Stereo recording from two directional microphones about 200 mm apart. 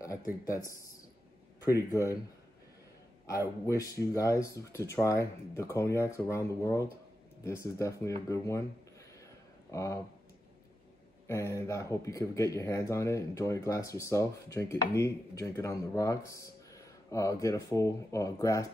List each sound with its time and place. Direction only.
0.5 s speech: 15° left (ahead or behind)
3.6 s speech: 15° left (ahead or behind)
9.7 s speech: 15° left (ahead or behind)
11.2 s speech: 15° left (ahead or behind)